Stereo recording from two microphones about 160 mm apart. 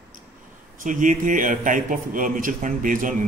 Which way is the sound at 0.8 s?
55° right (ahead or behind).